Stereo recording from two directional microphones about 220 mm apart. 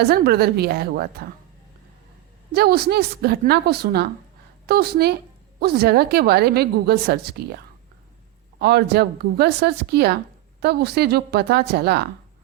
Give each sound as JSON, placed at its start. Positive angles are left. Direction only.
{"t": 0.0, "sound": "a woman's voice", "side_deg": -45}
{"t": 2.5, "sound": "a woman's voice", "side_deg": -45}